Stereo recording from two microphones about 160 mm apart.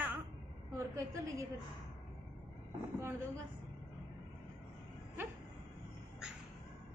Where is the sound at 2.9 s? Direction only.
15° right (ahead or behind).